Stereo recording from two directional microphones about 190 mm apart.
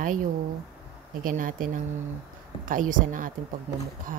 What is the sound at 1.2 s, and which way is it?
Speech, 45° right (ahead or behind).